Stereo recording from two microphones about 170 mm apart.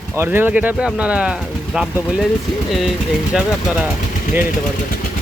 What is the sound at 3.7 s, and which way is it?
Speech, centre (ahead or behind).